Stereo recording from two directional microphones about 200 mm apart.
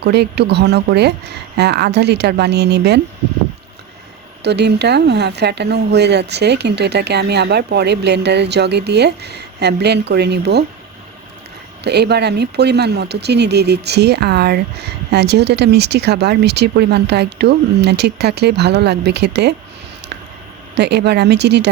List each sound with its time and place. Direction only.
0.0 s speech: 55° right (ahead or behind)
4.4 s speech: 55° right (ahead or behind)
11.8 s speech: 55° right (ahead or behind)
20.7 s speech: 55° right (ahead or behind)